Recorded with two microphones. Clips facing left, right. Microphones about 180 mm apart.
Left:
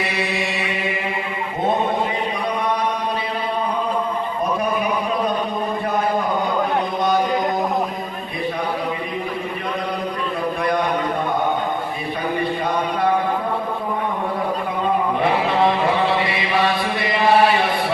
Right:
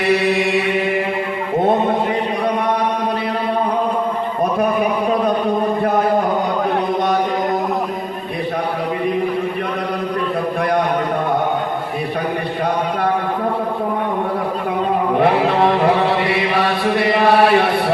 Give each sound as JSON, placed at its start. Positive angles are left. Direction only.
{"t": 0.0, "sound": "chant", "side_deg": -60}
{"t": 15.2, "sound": "chant", "side_deg": -60}